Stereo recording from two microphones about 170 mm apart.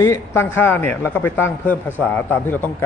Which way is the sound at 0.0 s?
15° left (ahead or behind).